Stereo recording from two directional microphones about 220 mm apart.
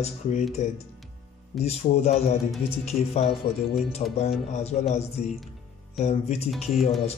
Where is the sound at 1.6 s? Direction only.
30° left (ahead or behind).